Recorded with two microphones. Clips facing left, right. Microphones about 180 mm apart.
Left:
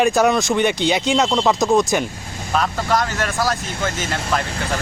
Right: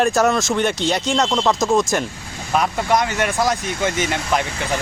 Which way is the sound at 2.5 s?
15° right (ahead or behind).